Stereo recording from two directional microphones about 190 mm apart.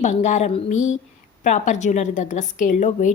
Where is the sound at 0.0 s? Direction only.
35° left (ahead or behind).